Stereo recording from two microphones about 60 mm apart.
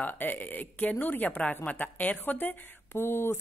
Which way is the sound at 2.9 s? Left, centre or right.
Left.